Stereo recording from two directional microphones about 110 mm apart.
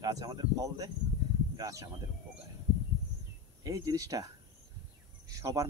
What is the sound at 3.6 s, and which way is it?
Speech, 35° right (ahead or behind).